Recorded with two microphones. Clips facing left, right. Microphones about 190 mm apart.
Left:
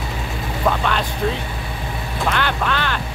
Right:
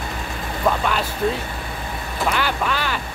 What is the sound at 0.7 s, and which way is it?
Speech, 5° right (ahead or behind).